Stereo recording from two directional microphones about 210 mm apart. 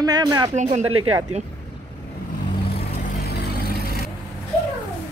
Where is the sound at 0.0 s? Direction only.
20° right (ahead or behind).